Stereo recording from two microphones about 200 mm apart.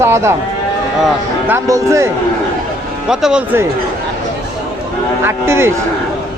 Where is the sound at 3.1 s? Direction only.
5° right (ahead or behind).